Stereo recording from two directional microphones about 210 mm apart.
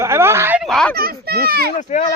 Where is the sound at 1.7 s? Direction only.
35° left (ahead or behind).